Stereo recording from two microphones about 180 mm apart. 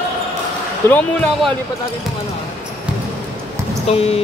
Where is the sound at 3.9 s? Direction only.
35° left (ahead or behind).